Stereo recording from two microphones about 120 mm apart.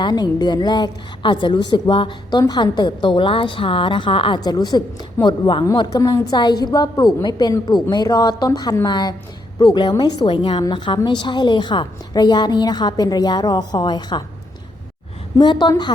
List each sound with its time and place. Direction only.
0.0 s a woman's voice: 35° left (ahead or behind)
15.4 s a woman's voice: 40° left (ahead or behind)